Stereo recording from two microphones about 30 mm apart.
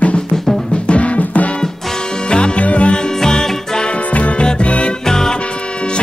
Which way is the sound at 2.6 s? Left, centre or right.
Left.